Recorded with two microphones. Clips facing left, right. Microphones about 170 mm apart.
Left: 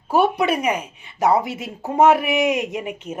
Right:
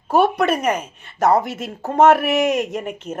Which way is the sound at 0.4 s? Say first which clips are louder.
Right 1 dB; 45° right (ahead or behind).